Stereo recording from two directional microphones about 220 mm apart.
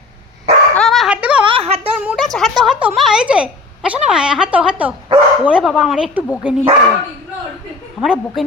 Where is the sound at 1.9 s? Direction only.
5° right (ahead or behind).